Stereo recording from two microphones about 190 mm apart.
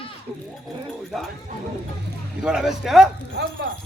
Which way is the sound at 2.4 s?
5° right (ahead or behind).